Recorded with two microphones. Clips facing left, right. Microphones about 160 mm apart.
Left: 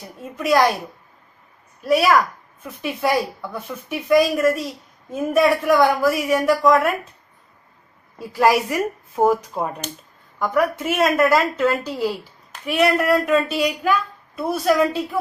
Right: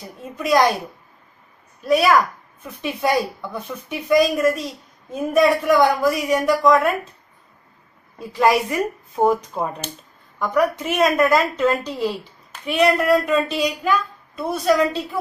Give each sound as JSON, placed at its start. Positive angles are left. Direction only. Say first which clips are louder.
{"t": 0.4, "sound": "a woman's voice", "louder": "even", "side_deg": 0}
{"t": 1.8, "sound": "a woman's voice", "louder": "even", "side_deg": 5}
{"t": 8.4, "sound": "a woman's voice", "louder": "even", "side_deg": 5}